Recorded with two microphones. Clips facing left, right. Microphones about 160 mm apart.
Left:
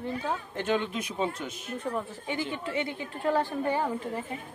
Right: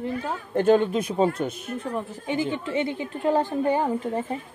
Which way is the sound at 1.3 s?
55° right (ahead or behind).